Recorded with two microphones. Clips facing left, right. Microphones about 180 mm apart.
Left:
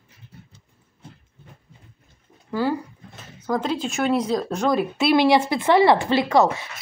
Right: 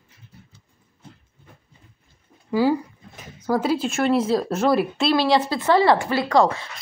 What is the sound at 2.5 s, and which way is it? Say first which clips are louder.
Speech: right 4 dB; 10° right (ahead or behind).